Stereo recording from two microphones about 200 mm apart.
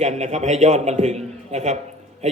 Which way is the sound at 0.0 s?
35° right (ahead or behind).